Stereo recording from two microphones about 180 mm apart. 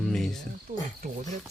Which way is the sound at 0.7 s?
50° right (ahead or behind).